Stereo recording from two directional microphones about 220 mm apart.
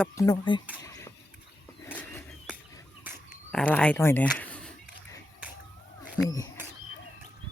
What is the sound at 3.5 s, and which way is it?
Speech, 5° left (ahead or behind).